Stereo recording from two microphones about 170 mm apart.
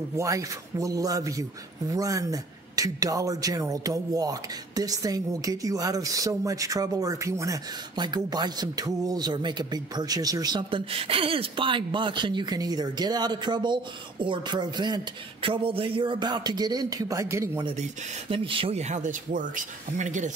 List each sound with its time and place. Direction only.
0.2 s a man's voice: 20° right (ahead or behind)
18.3 s speech: 30° right (ahead or behind)